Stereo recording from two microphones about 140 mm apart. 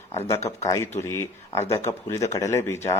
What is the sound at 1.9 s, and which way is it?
Speech, 20° left (ahead or behind).